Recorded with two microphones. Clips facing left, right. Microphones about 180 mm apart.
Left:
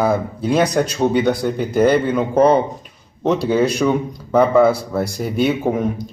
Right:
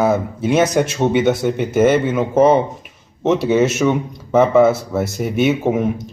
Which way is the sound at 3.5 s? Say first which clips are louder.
Right 1 dB; 25° right (ahead or behind).